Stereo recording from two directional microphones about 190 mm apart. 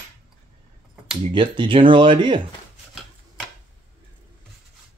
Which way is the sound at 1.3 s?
25° right (ahead or behind).